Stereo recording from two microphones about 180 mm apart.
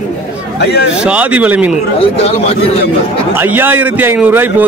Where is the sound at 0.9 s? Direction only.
5° right (ahead or behind).